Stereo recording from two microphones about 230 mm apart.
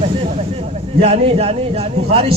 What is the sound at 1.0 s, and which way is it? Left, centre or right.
A man's voice, right.